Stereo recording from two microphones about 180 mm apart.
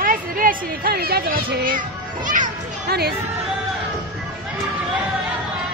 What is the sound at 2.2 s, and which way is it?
Speech, 45° right (ahead or behind).